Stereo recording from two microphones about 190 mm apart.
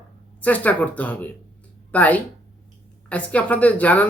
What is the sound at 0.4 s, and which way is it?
Speech, 10° left (ahead or behind).